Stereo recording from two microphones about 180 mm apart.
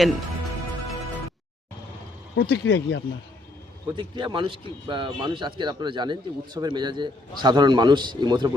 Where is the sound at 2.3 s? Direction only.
60° left (ahead or behind).